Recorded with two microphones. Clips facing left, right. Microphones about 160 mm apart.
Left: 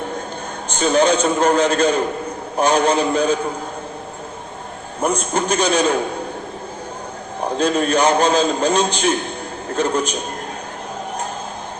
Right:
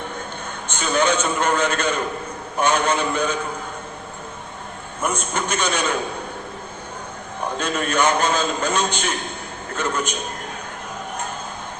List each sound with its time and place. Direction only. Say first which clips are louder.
0.7 s a man's voice: left 5 dB; 35° left (ahead or behind)
4.9 s a man's voice: left 5 dB; 35° left (ahead or behind)
7.4 s a man's voice: left 6 dB; 35° left (ahead or behind)